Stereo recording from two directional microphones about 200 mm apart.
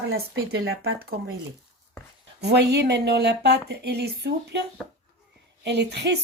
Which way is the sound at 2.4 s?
55° right (ahead or behind).